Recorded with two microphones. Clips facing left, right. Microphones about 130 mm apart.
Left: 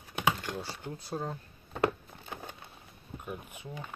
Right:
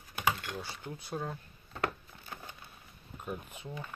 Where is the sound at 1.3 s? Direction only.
25° left (ahead or behind).